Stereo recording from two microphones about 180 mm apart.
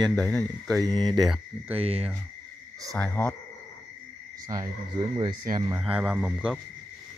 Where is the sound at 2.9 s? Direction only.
10° left (ahead or behind).